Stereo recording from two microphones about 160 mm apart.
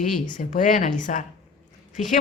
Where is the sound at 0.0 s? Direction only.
55° left (ahead or behind).